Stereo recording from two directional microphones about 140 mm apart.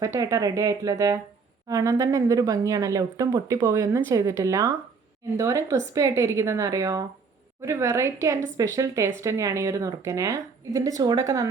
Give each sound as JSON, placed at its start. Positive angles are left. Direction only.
{"t": 0.0, "sound": "speech", "side_deg": -25}